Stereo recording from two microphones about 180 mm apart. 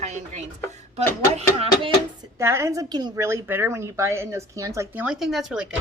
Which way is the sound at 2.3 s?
15° right (ahead or behind).